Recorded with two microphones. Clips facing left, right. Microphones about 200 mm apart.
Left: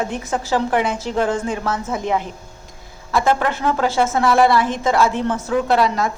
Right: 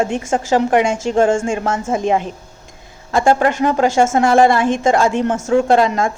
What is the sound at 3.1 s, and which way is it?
Speech, 50° right (ahead or behind).